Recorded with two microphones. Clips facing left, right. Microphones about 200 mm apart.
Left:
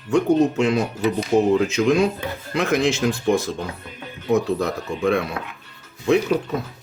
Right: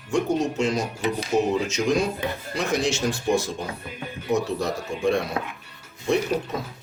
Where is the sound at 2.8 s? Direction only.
90° left.